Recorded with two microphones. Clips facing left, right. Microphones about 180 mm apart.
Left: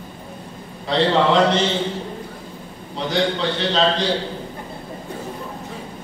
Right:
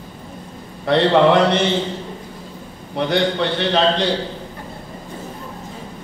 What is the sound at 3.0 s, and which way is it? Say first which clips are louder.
A man's voice: right 3 dB; 60° right (ahead or behind).